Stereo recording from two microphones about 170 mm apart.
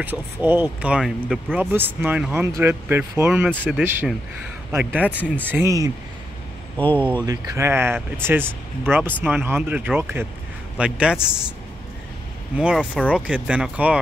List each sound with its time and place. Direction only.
0.0 s speech: 10° right (ahead or behind)
6.8 s speech: 10° left (ahead or behind)
7.2 s a man's voice: 20° right (ahead or behind)
12.5 s speech: 5° right (ahead or behind)